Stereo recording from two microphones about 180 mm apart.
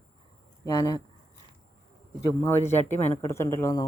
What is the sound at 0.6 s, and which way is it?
Speech, 20° left (ahead or behind).